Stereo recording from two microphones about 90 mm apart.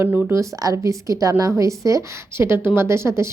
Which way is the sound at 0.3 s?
40° right (ahead or behind).